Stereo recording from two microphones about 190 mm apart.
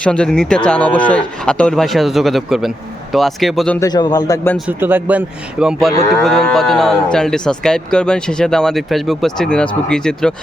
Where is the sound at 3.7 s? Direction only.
20° left (ahead or behind).